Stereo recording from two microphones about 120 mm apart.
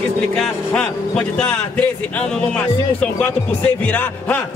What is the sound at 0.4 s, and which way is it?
Speech, 5° left (ahead or behind).